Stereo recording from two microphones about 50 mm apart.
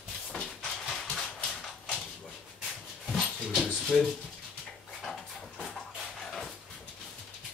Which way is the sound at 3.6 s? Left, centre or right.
Centre.